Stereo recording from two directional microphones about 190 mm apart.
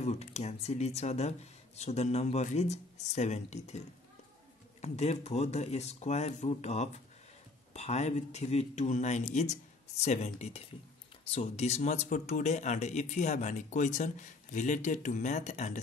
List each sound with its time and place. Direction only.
0.0 s speech: 35° left (ahead or behind)
4.8 s speech: 35° left (ahead or behind)